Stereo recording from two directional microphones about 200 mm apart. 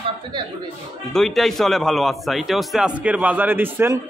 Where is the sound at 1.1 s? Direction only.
Centre (ahead or behind).